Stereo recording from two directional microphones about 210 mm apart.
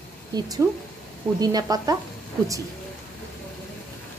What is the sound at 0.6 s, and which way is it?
Speech, 10° right (ahead or behind).